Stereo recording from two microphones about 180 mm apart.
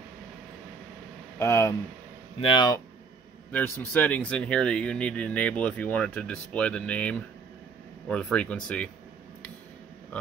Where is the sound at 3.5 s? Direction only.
10° left (ahead or behind).